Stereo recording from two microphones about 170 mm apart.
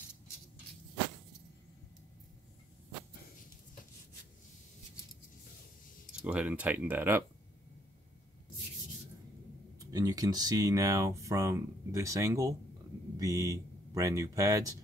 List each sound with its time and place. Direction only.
6.2 s speech: 10° right (ahead or behind)
9.8 s speech: 20° right (ahead or behind)